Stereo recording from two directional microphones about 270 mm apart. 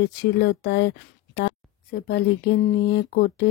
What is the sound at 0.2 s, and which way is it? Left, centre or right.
Speech, left.